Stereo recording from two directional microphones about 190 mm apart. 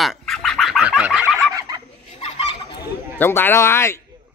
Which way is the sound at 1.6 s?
20° right (ahead or behind).